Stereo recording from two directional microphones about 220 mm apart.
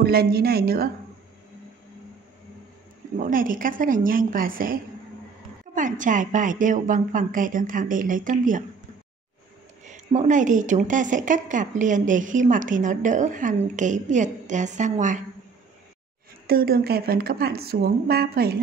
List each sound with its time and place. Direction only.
0.0 s speech: 45° right (ahead or behind)
3.2 s speech: 40° right (ahead or behind)
5.8 s speech: 35° right (ahead or behind)
9.8 s speech: 35° right (ahead or behind)
16.4 s speech: 45° right (ahead or behind)